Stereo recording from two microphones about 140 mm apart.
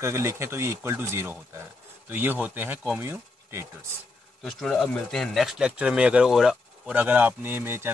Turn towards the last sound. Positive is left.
turn(degrees=-15)  # may be behind; listen again after turning